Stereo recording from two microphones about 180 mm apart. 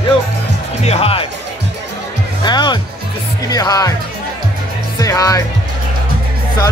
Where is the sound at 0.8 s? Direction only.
35° left (ahead or behind).